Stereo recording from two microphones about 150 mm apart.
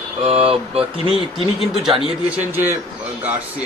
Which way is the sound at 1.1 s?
Centre (ahead or behind).